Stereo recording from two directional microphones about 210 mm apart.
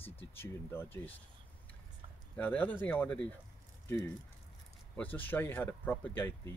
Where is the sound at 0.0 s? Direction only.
10° left (ahead or behind).